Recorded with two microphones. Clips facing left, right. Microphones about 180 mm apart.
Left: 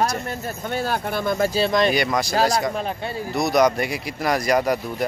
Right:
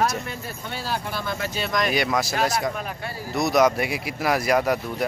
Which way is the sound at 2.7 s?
25° left (ahead or behind).